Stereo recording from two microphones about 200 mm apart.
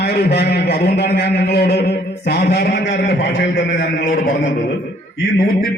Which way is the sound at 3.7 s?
45° left (ahead or behind).